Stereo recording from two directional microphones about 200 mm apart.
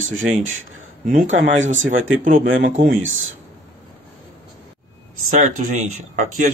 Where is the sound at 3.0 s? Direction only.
80° right.